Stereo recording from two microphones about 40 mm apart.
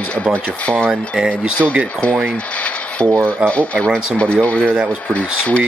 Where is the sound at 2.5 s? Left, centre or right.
Left.